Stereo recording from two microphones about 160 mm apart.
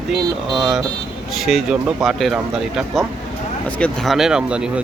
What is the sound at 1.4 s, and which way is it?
Speech, 5° right (ahead or behind).